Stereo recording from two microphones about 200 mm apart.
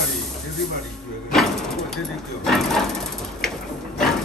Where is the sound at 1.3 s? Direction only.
Centre (ahead or behind).